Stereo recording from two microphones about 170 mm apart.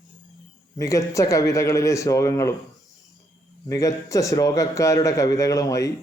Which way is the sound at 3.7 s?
20° left (ahead or behind).